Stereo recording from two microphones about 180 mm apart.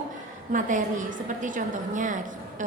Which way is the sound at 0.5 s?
45° right (ahead or behind).